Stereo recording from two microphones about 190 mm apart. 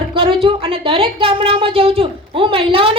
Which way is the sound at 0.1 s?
25° right (ahead or behind).